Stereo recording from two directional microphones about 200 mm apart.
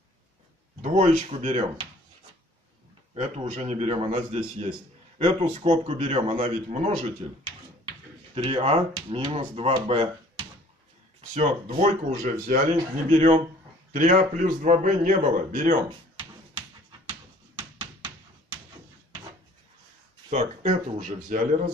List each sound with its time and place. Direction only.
0.8 s speech: 35° right (ahead or behind)
3.2 s speech: 30° right (ahead or behind)
8.4 s speech: 30° right (ahead or behind)
11.1 s speech: 35° right (ahead or behind)
15.9 s a sound: 25° right (ahead or behind)
20.2 s speech: 35° right (ahead or behind)